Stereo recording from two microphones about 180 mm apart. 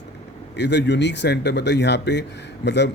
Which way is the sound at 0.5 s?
70° left (ahead or behind).